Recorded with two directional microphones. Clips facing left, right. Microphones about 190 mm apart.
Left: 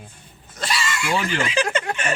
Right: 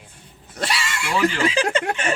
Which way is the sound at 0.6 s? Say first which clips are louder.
Even; 65° right (ahead or behind).